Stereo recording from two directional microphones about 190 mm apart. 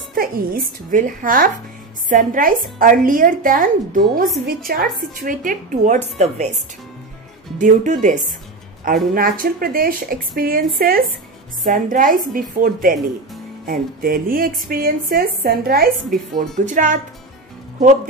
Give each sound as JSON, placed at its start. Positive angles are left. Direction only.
{"t": 0.1, "sound": "speech", "side_deg": -50}
{"t": 7.5, "sound": "speech", "side_deg": -40}